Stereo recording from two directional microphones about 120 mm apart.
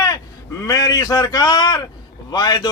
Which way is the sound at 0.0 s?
25° left (ahead or behind).